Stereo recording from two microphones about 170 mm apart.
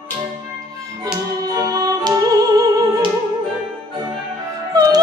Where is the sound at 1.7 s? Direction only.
20° right (ahead or behind).